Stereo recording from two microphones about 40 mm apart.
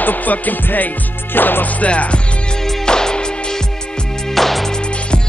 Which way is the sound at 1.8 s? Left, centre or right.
Left.